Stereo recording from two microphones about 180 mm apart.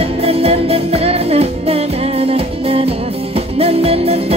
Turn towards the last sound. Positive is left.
turn(degrees=-35)  # may be behind; listen again after turning